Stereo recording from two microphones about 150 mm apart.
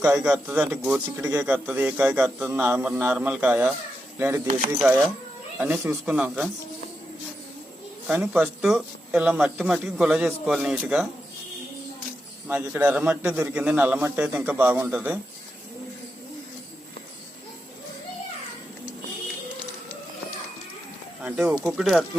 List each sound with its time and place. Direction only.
0.0 s a man's voice: 10° right (ahead or behind)
8.3 s speech: 5° right (ahead or behind)
12.5 s a man's voice: 10° right (ahead or behind)
21.2 s a man's voice: 5° right (ahead or behind)